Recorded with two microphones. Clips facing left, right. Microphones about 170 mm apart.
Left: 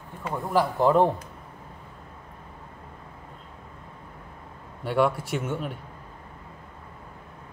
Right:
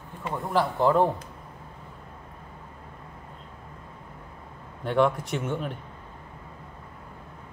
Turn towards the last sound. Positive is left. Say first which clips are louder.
# even
turn(degrees=5)  # may be behind; listen again after turning